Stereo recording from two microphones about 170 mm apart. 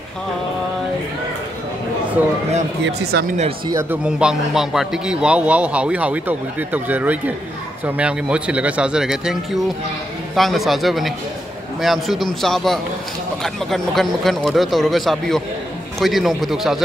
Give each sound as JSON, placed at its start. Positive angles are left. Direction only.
{"t": 2.8, "sound": "speech", "side_deg": -65}
{"t": 3.9, "sound": "speech", "side_deg": -5}